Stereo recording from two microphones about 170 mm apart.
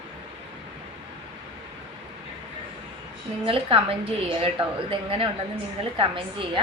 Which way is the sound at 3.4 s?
35° right (ahead or behind).